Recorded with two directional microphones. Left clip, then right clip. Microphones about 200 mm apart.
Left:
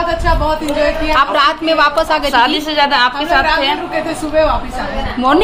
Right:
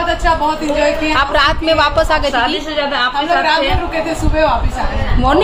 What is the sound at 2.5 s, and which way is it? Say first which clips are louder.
Speech: left 4 dB; 55° left (ahead or behind).